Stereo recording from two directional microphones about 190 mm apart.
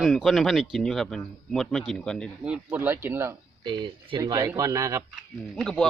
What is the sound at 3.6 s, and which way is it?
A man's voice, 25° right (ahead or behind).